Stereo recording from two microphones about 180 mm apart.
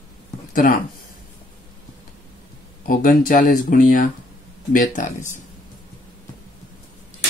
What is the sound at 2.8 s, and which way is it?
Speech, 50° left (ahead or behind).